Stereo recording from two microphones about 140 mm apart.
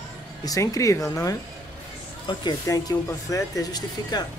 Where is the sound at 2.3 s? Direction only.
30° left (ahead or behind).